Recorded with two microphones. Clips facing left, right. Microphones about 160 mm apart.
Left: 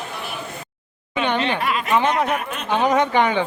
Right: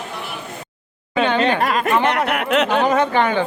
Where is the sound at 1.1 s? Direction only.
40° right (ahead or behind).